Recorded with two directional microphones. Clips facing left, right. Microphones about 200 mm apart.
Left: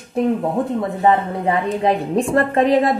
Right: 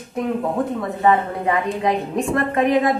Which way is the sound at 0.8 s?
25° left (ahead or behind).